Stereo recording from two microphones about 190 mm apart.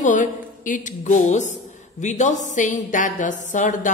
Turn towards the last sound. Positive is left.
turn(degrees=40)  # may be behind; listen again after turning